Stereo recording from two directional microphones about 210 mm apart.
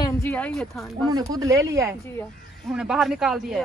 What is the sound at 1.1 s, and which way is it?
Speech, 15° right (ahead or behind).